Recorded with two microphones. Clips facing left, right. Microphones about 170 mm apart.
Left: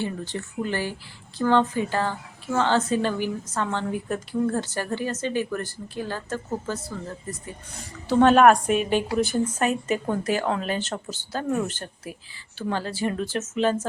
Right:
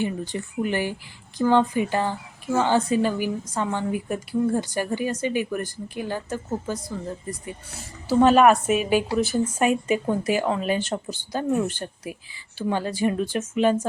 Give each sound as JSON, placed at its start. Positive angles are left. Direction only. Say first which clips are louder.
{"t": 0.0, "sound": "speech", "louder": "right 3 dB", "side_deg": -15}
{"t": 7.8, "sound": "speech", "louder": "even", "side_deg": -5}